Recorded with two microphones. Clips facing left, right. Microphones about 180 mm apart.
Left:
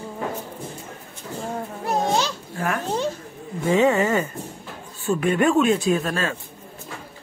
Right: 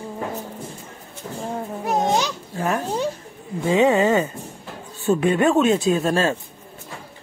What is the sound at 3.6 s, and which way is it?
Speech, 20° right (ahead or behind).